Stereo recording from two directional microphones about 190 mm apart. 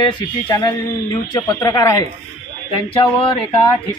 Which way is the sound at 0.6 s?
20° left (ahead or behind).